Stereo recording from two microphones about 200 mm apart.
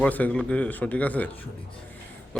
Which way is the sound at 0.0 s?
5° left (ahead or behind).